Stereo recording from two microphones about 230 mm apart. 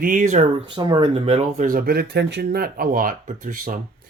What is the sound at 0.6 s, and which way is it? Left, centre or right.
Speech, centre.